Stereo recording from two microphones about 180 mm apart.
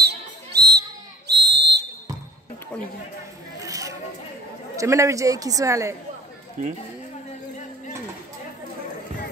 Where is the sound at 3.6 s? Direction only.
20° right (ahead or behind).